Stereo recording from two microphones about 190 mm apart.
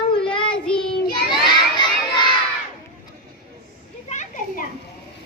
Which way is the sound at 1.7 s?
25° left (ahead or behind).